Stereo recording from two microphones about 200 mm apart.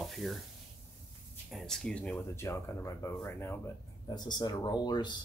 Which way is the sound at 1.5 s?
Centre (ahead or behind).